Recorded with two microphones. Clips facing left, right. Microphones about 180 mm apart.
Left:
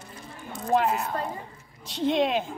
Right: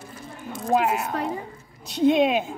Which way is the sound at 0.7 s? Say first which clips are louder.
Right 2 dB; 5° right (ahead or behind).